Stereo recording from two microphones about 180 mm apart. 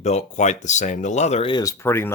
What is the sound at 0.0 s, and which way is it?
Speech, 40° left (ahead or behind).